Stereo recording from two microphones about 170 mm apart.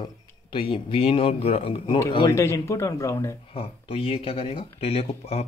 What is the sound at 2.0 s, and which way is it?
Speech, 25° left (ahead or behind).